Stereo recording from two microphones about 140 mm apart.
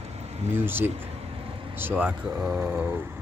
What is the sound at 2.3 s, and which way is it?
Speech, 20° right (ahead or behind).